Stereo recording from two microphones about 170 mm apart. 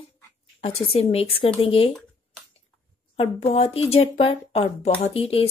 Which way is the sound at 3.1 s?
35° left (ahead or behind).